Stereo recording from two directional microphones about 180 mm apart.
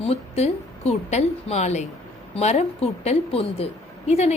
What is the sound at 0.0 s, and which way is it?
A woman's voice, 35° left (ahead or behind).